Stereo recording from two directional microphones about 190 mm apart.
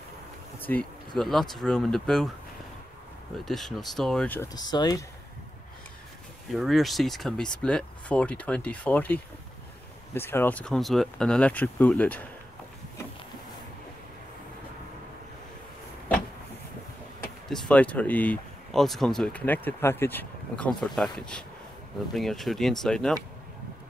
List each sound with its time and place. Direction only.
0.6 s speech: 10° left (ahead or behind)
3.4 s speech: centre (ahead or behind)
4.6 s speech: 20° left (ahead or behind)
6.5 s speech: centre (ahead or behind)
17.5 s speech: 5° left (ahead or behind)